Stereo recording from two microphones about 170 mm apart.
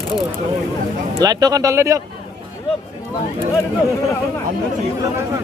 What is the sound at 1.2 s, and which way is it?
Speech, 20° right (ahead or behind).